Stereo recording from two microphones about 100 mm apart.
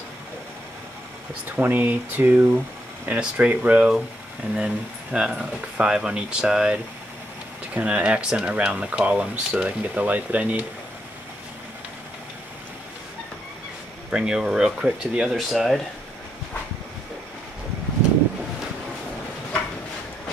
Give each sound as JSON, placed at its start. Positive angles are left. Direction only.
{"t": 1.5, "sound": "speech", "side_deg": -15}
{"t": 14.1, "sound": "speech", "side_deg": -5}